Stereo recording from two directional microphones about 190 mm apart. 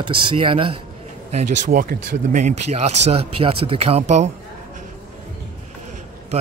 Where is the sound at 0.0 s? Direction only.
25° right (ahead or behind).